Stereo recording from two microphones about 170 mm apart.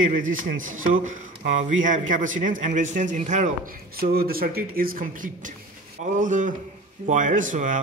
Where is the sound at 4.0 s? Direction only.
60° right (ahead or behind).